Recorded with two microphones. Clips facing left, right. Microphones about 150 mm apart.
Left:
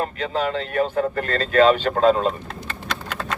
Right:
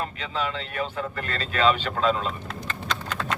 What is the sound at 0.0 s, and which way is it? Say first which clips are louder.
A man's voice: left 6 dB; 45° left (ahead or behind).